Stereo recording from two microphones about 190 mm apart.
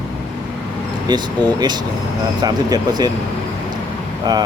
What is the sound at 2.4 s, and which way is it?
Speech, 20° right (ahead or behind).